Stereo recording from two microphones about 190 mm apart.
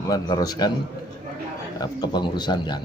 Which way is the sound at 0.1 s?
20° left (ahead or behind).